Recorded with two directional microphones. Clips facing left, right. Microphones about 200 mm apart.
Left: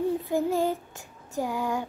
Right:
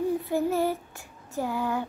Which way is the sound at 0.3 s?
15° left (ahead or behind).